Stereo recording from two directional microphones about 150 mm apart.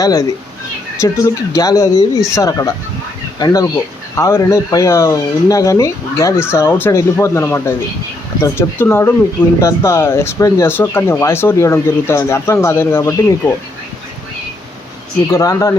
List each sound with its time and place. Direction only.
0.0 s speech: 20° left (ahead or behind)
15.3 s speech: 20° left (ahead or behind)